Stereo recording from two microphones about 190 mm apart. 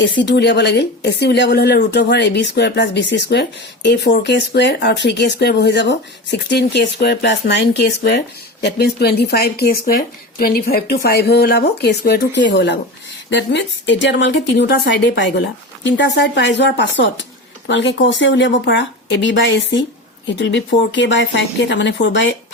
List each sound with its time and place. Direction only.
0.0 s a woman's voice: 70° left (ahead or behind)